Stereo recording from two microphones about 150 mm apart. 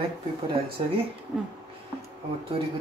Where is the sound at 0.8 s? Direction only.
35° right (ahead or behind).